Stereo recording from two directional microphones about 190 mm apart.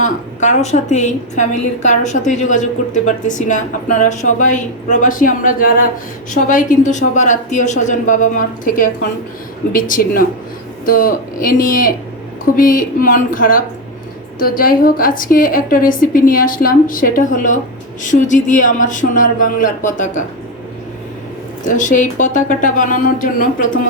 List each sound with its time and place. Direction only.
0.0 s a woman's voice: 40° left (ahead or behind)
10.8 s a woman's voice: 50° left (ahead or behind)
21.7 s a woman's voice: 40° left (ahead or behind)